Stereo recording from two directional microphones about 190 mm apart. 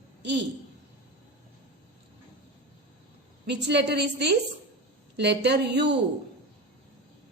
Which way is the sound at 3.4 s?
65° right (ahead or behind).